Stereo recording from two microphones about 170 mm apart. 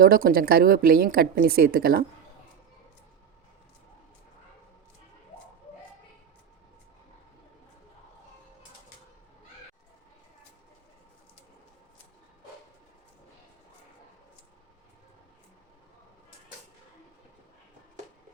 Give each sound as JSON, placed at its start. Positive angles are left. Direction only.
{"t": 0.0, "sound": "a woman's voice", "side_deg": -60}